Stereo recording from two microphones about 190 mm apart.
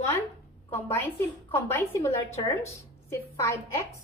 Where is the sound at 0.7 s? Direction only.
10° left (ahead or behind).